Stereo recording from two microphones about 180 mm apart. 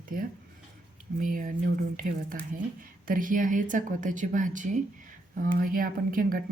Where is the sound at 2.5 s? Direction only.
50° right (ahead or behind).